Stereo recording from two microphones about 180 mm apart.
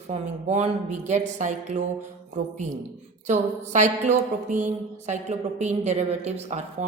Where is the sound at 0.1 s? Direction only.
40° right (ahead or behind).